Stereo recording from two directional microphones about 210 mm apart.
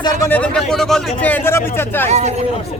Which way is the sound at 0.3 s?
5° left (ahead or behind).